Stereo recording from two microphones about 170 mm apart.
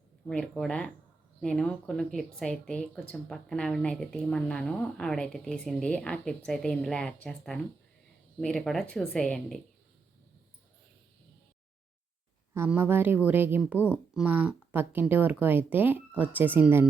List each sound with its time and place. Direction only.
0.3 s speech: 5° left (ahead or behind)
12.5 s speech: 10° right (ahead or behind)